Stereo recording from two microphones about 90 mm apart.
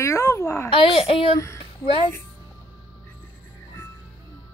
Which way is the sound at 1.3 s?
30° left (ahead or behind).